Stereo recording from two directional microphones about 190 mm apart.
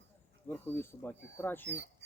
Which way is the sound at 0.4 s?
10° left (ahead or behind).